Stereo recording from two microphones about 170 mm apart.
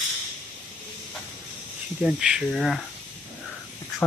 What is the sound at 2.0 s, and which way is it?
Speech, 5° right (ahead or behind).